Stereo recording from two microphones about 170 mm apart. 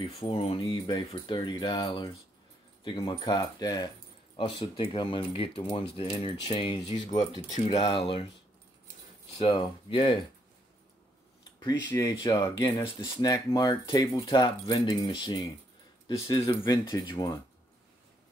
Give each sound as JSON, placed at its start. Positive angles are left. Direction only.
{"t": 0.2, "sound": "keys jangling", "side_deg": 35}
{"t": 0.7, "sound": "speech", "side_deg": 25}
{"t": 5.9, "sound": "keys jangling", "side_deg": 30}
{"t": 9.4, "sound": "speech", "side_deg": 30}
{"t": 12.2, "sound": "speech", "side_deg": 25}